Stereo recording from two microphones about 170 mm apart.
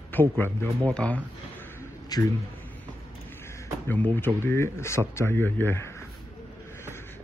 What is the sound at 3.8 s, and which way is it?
Speech, 10° left (ahead or behind).